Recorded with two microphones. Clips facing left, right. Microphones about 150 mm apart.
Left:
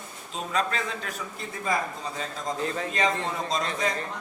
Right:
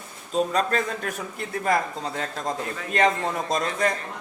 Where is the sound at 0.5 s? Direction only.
45° right (ahead or behind).